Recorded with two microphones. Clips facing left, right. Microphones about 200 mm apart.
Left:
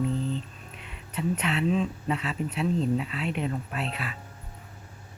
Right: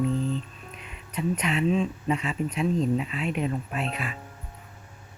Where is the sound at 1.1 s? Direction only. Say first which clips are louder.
Right 1 dB; 10° right (ahead or behind).